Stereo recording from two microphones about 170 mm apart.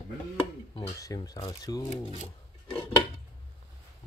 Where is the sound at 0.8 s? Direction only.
20° left (ahead or behind).